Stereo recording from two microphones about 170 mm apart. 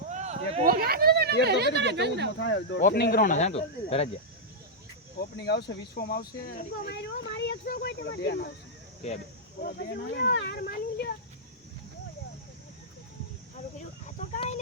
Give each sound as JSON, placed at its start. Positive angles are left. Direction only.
{"t": 0.1, "sound": "a sound", "side_deg": -40}
{"t": 0.6, "sound": "a sound", "side_deg": -60}
{"t": 1.5, "sound": "speech", "side_deg": -80}
{"t": 2.4, "sound": "speech", "side_deg": 90}
{"t": 2.8, "sound": "speech", "side_deg": 65}
{"t": 3.3, "sound": "speech", "side_deg": 40}
{"t": 5.4, "sound": "speech", "side_deg": 75}
{"t": 9.6, "sound": "speech", "side_deg": 65}
{"t": 14.3, "sound": "a sound", "side_deg": 40}